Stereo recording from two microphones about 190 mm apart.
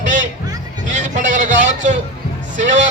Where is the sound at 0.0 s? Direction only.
40° right (ahead or behind).